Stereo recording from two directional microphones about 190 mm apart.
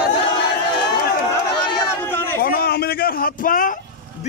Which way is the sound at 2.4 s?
50° left (ahead or behind).